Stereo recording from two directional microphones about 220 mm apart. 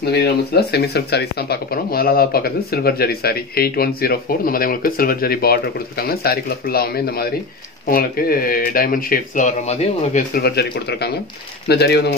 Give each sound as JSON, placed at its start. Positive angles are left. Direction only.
{"t": 0.1, "sound": "speech", "side_deg": 50}
{"t": 10.3, "sound": "speech", "side_deg": 45}